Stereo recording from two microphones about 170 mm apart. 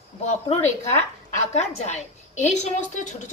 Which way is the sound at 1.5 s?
40° left (ahead or behind).